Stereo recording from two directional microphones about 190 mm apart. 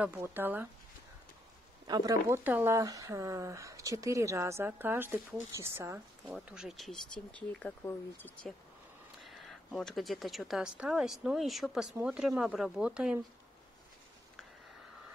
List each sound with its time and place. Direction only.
0.0 s speech: 10° right (ahead or behind)
1.9 s speech: 20° right (ahead or behind)